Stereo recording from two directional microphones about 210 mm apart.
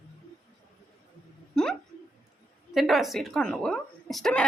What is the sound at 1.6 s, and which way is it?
Speech, 5° left (ahead or behind).